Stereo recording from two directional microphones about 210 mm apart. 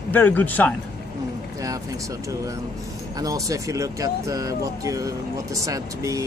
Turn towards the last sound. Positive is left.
turn(degrees=-15)  # may be behind; listen again after turning